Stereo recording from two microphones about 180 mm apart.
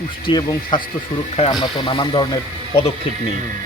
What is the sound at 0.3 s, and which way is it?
Speech, 25° left (ahead or behind).